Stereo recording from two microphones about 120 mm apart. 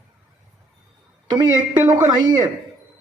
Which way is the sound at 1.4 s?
35° right (ahead or behind).